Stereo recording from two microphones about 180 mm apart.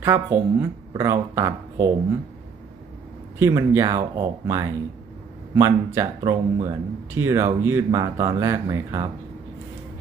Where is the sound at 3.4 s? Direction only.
15° right (ahead or behind).